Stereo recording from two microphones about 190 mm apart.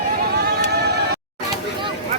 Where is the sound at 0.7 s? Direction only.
60° right (ahead or behind).